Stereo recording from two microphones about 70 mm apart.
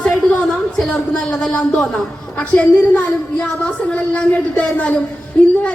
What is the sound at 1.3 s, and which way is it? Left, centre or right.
A woman's voice, centre.